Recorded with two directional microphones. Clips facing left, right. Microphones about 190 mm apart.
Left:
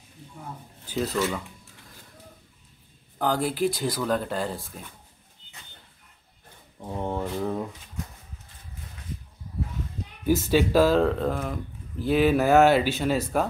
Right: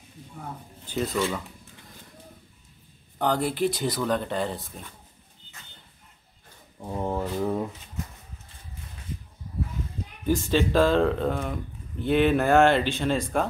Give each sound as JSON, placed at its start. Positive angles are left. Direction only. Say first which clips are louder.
{"t": 0.2, "sound": "a sound", "louder": "right 1 dB", "side_deg": -40}
{"t": 0.8, "sound": "speech", "louder": "even", "side_deg": 0}
{"t": 3.2, "sound": "speech", "louder": "even", "side_deg": 0}
{"t": 6.8, "sound": "speech", "louder": "right 1 dB", "side_deg": -5}
{"t": 10.2, "sound": "speech", "louder": "left 2 dB", "side_deg": 5}